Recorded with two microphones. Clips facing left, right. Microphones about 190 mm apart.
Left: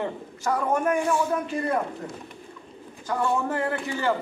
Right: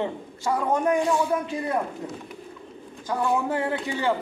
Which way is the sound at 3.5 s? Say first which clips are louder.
Right 1 dB; 15° right (ahead or behind).